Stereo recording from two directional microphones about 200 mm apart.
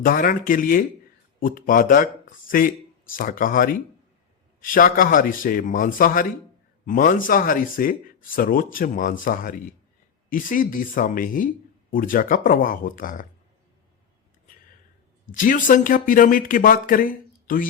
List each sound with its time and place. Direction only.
0.0 s speech: 45° left (ahead or behind)
15.3 s speech: 40° left (ahead or behind)